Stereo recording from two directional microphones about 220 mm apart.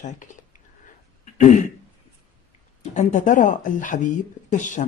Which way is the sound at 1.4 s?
35° left (ahead or behind).